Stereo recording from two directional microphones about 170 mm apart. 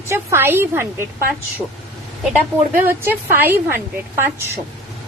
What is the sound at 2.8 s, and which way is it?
A woman's voice, 10° right (ahead or behind).